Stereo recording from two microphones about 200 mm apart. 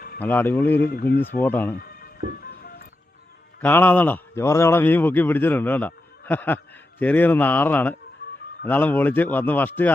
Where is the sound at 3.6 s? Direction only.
10° left (ahead or behind).